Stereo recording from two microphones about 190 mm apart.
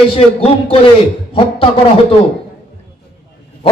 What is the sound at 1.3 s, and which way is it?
Speech, 30° left (ahead or behind).